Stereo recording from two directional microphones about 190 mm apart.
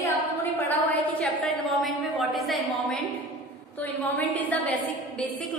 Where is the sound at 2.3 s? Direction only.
Centre (ahead or behind).